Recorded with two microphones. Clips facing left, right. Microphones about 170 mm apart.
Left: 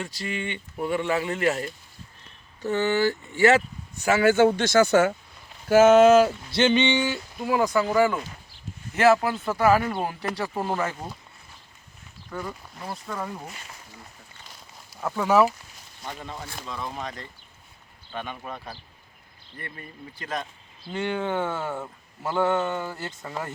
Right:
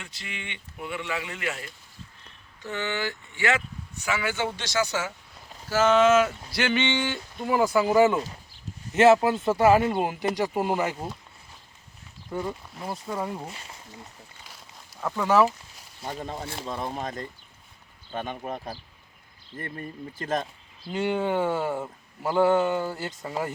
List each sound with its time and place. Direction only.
0.0 s speech: 40° left (ahead or behind); by 5.1 s 55° left (ahead or behind)
5.6 s a sound: 50° left (ahead or behind); by 7.9 s 5° right (ahead or behind)
7.9 s speech: 20° right (ahead or behind)
12.3 s speech: 25° right (ahead or behind)
15.0 s speech: 5° left (ahead or behind)
16.0 s speech: 35° right (ahead or behind)
17.0 s speech: 45° right (ahead or behind)
19.5 s speech: 45° right (ahead or behind)
20.9 s speech: 5° right (ahead or behind)